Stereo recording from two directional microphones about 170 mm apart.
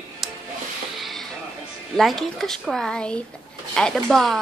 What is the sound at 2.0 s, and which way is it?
A woman's voice, centre (ahead or behind).